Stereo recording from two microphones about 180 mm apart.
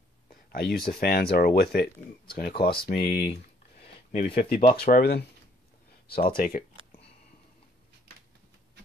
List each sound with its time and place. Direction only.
0.5 s speech: 55° left (ahead or behind)
4.3 s speech: 50° left (ahead or behind)